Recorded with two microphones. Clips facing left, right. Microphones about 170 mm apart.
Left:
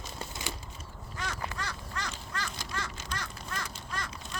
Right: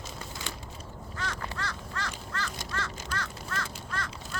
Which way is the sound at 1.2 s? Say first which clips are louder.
Right 1 dB; 15° left (ahead or behind).